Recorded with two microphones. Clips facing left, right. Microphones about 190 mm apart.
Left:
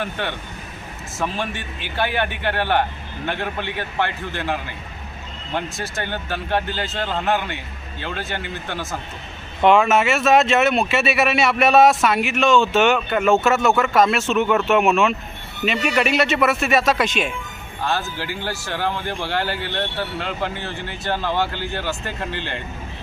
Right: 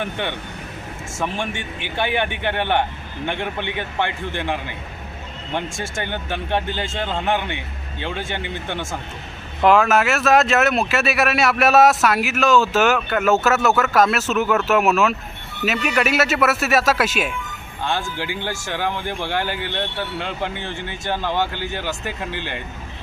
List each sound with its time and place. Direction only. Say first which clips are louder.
0.0 s speech: right 1 dB; 20° right (ahead or behind)
2.0 s speech: even; 20° right (ahead or behind)
9.6 s speech: even; centre (ahead or behind)
18.7 s speech: even; 15° right (ahead or behind)